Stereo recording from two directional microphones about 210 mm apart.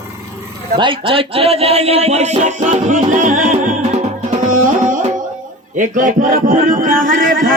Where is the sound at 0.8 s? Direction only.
25° right (ahead or behind).